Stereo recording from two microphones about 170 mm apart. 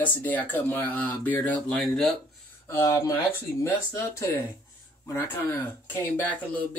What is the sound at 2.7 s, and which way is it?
Speech, 15° left (ahead or behind).